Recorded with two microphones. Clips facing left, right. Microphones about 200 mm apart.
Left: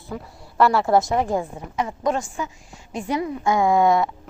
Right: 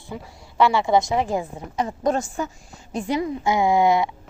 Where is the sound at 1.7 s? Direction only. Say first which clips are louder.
Right 1 dB; 40° right (ahead or behind).